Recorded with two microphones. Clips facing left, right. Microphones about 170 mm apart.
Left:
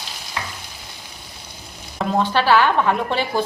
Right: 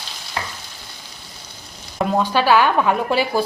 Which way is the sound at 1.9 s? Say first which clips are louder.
Right 1 dB; 10° right (ahead or behind).